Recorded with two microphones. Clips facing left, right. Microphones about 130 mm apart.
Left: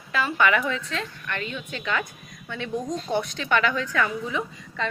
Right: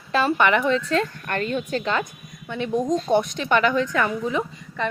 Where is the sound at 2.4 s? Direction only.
20° right (ahead or behind).